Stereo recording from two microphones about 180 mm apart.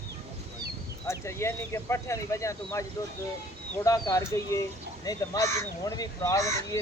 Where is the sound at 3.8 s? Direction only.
20° left (ahead or behind).